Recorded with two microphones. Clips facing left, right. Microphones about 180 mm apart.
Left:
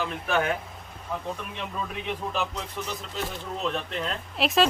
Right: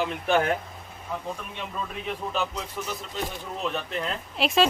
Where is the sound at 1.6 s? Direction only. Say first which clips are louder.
Left 1 dB; centre (ahead or behind).